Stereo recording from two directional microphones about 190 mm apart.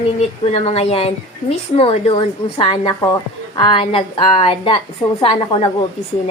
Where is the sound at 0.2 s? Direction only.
30° left (ahead or behind).